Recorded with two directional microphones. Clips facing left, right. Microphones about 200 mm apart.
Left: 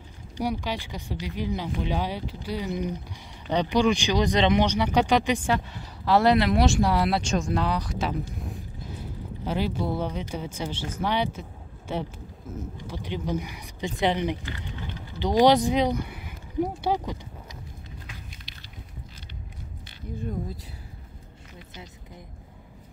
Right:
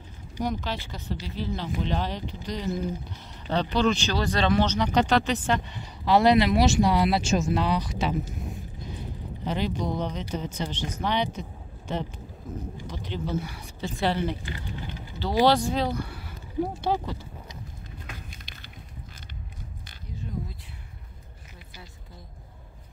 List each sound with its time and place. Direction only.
0.4 s speech: 10° left (ahead or behind)
9.4 s speech: 5° left (ahead or behind)
18.0 s a sound: 55° right (ahead or behind)